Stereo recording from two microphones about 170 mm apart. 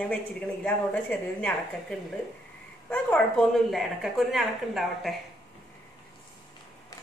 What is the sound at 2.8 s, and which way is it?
A woman's voice, 5° left (ahead or behind).